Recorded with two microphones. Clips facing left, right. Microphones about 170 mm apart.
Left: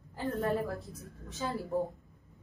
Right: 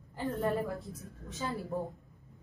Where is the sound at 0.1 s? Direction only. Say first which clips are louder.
Even; centre (ahead or behind).